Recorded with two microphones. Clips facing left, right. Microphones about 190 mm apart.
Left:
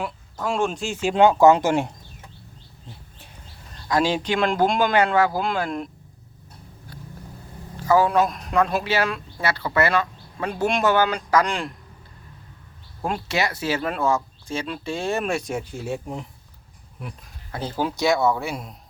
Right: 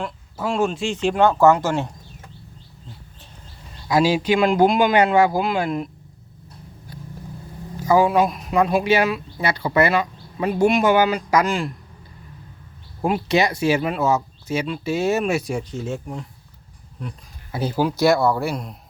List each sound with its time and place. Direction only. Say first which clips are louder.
0.3 s speech: right 2 dB; 5° right (ahead or behind); by 1.9 s 15° left (ahead or behind)
3.8 s speech: right 4 dB; 10° right (ahead or behind)
5.6 s speech: right 4 dB; 5° right (ahead or behind)
7.8 s speech: right 2 dB; 10° right (ahead or behind)
13.0 s speech: right 6 dB; 10° right (ahead or behind)
15.7 s speech: right 1 dB; 15° left (ahead or behind)
17.5 s speech: right 4 dB; 10° right (ahead or behind)